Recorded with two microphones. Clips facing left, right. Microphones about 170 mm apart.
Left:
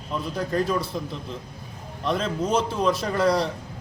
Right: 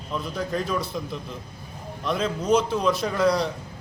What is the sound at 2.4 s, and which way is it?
Speech, 30° left (ahead or behind).